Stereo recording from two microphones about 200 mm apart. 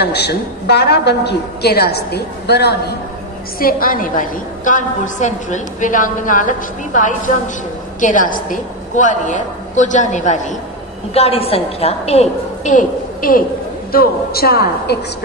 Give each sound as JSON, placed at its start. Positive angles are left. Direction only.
{"t": 0.0, "sound": "a woman's voice", "side_deg": 55}
{"t": 3.5, "sound": "a woman's voice", "side_deg": 45}